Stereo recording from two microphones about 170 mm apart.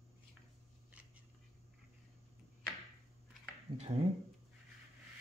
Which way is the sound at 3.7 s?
35° right (ahead or behind).